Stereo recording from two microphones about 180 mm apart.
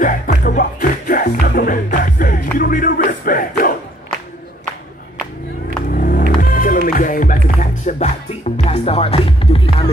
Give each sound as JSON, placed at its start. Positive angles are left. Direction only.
{"t": 0.0, "sound": "music", "side_deg": 50}
{"t": 5.9, "sound": "music", "side_deg": 50}